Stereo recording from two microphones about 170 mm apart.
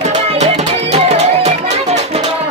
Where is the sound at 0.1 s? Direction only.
40° right (ahead or behind).